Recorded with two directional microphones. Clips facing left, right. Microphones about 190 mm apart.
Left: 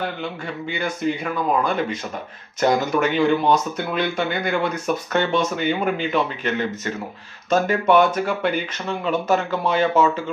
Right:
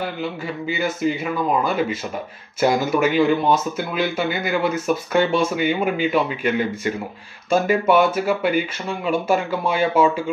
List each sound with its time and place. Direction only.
0.2 s a man's voice: 5° right (ahead or behind)